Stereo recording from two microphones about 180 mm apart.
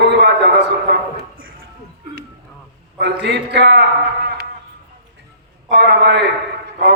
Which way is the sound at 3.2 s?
70° right (ahead or behind).